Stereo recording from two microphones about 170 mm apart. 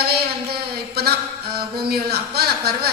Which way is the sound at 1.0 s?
65° right (ahead or behind).